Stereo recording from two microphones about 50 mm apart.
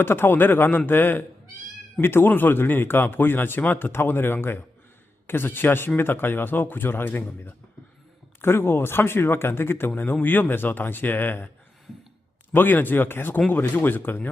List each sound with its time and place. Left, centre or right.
0.0 s speech: left
8.4 s speech: left
12.5 s speech: left